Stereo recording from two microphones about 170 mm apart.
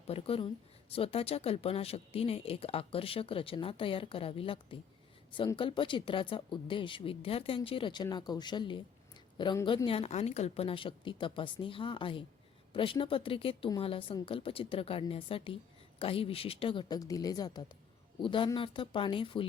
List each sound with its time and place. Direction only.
0.1 s speech: 35° left (ahead or behind)